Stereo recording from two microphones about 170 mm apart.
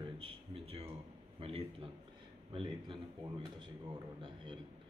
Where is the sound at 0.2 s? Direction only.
35° right (ahead or behind).